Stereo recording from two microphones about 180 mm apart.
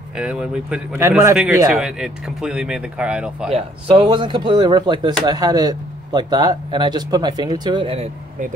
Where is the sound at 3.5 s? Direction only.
30° right (ahead or behind).